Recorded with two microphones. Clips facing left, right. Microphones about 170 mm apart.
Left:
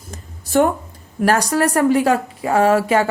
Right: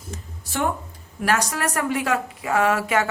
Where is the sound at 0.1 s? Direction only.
45° left (ahead or behind).